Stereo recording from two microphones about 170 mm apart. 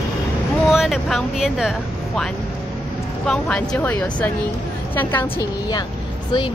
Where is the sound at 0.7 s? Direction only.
Centre (ahead or behind).